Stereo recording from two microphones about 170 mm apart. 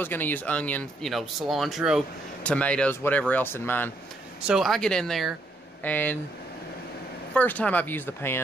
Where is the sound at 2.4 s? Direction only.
10° left (ahead or behind).